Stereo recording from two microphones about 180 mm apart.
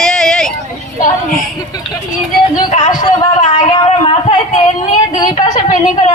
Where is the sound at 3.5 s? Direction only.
25° left (ahead or behind).